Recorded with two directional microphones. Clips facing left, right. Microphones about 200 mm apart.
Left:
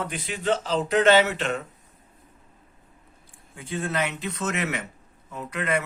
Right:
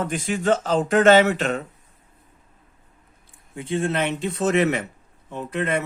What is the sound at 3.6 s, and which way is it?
A man's voice, 25° right (ahead or behind).